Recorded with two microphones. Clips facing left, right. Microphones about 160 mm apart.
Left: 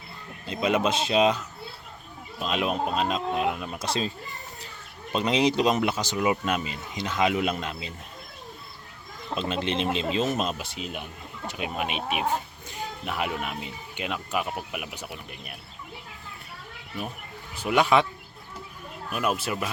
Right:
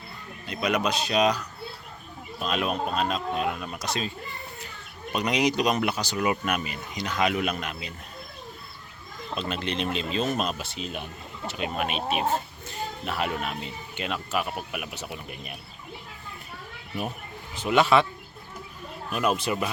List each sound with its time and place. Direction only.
0.4 s speech: 25° left (ahead or behind)
5.1 s speech: 25° left (ahead or behind)
9.3 s speech: 20° left (ahead or behind)
17.5 s speech: 10° left (ahead or behind)
19.1 s speech: 5° left (ahead or behind)